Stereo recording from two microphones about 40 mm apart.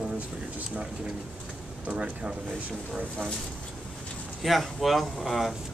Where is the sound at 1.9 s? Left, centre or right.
Right.